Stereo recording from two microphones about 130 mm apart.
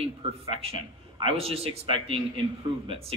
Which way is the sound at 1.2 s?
50° right (ahead or behind).